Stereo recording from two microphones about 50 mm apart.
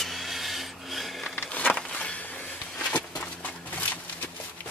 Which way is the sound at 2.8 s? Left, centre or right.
Left.